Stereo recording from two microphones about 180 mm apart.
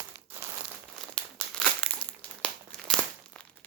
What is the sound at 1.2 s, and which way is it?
Crumpling, 5° left (ahead or behind).